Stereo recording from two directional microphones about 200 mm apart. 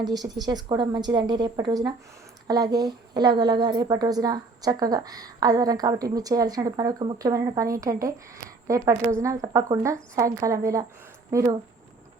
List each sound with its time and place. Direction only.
0.0 s a woman's voice: 20° right (ahead or behind)